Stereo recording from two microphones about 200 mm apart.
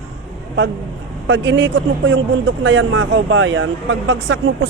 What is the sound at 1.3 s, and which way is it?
A man's voice, 70° right (ahead or behind).